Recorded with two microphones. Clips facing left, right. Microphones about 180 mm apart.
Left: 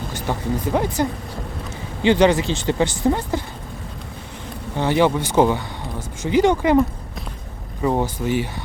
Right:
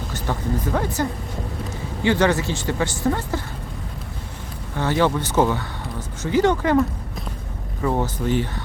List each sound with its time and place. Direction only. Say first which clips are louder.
0.1 s speech: left 1 dB; 15° left (ahead or behind)
2.0 s speech: left 4 dB; 15° left (ahead or behind)
4.8 s speech: left 2 dB; 15° left (ahead or behind)